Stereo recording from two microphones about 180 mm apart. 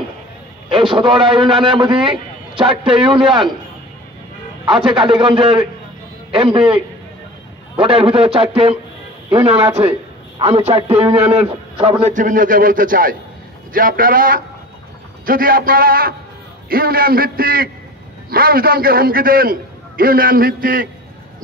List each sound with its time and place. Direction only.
0.7 s a man's voice: 30° right (ahead or behind)
4.6 s a man's voice: 30° right (ahead or behind)
12.1 s a man's voice: 45° right (ahead or behind)